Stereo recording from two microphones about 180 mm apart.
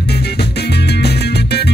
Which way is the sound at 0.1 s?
65° left (ahead or behind).